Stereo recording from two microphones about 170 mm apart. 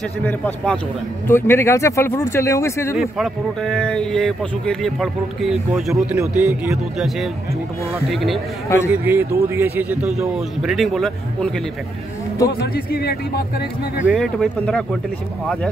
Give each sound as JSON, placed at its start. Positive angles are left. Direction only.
{"t": 0.2, "sound": "speech", "side_deg": 10}
{"t": 3.0, "sound": "speech", "side_deg": 0}
{"t": 6.1, "sound": "speech", "side_deg": -15}
{"t": 8.1, "sound": "speech", "side_deg": 0}
{"t": 8.6, "sound": "speech", "side_deg": 15}
{"t": 8.9, "sound": "speech", "side_deg": -10}
{"t": 12.4, "sound": "speech", "side_deg": 65}
{"t": 14.0, "sound": "speech", "side_deg": 0}